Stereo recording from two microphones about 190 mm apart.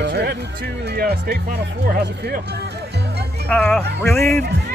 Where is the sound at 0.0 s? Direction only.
60° right (ahead or behind).